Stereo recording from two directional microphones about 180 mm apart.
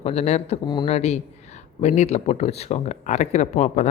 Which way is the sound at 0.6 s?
25° left (ahead or behind).